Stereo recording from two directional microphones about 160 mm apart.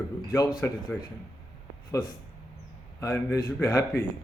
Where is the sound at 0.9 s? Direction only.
10° left (ahead or behind).